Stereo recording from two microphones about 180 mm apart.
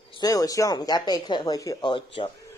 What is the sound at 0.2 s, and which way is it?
Speech, 20° left (ahead or behind).